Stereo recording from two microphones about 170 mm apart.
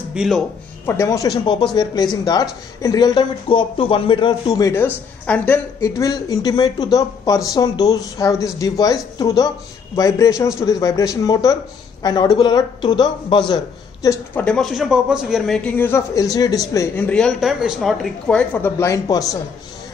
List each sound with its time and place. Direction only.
0.1 s speech: 5° right (ahead or behind)
0.8 s speech: 15° left (ahead or behind)
14.4 s a man's voice: 5° left (ahead or behind); by 19.3 s 20° left (ahead or behind)